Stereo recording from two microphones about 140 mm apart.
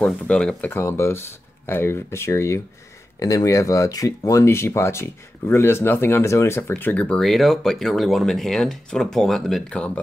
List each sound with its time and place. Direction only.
0.0 s speech: 5° left (ahead or behind)